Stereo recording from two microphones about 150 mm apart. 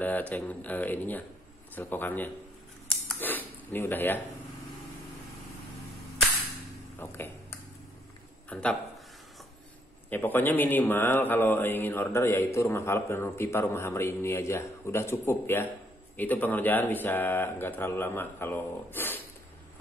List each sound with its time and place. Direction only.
0.0 s speech: 10° left (ahead or behind)
7.0 s speech: 15° left (ahead or behind)
8.5 s speech: 10° left (ahead or behind)
10.0 s speech: 10° left (ahead or behind)